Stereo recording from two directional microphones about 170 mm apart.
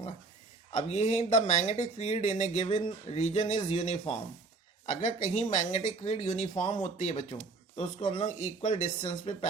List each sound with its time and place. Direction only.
0.7 s speech: 40° left (ahead or behind)